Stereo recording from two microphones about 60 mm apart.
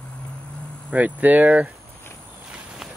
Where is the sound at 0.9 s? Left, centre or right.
Right.